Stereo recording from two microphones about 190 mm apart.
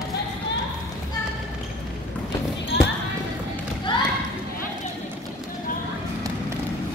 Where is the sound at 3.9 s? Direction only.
25° left (ahead or behind).